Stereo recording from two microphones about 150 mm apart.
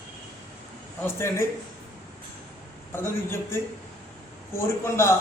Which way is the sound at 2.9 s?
15° left (ahead or behind).